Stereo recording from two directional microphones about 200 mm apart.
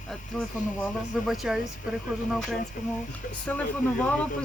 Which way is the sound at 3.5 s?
5° left (ahead or behind).